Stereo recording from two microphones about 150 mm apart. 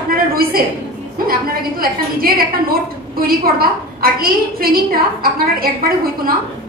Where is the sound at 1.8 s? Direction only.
80° right.